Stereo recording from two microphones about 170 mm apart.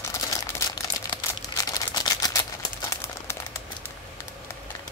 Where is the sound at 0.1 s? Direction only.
20° left (ahead or behind).